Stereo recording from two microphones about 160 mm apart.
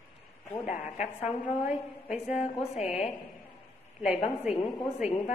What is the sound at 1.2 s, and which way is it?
A woman's voice, 10° right (ahead or behind).